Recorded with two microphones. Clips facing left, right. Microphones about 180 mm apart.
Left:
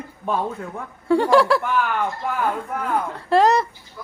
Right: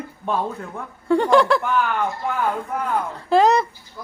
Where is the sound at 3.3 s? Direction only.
Centre (ahead or behind).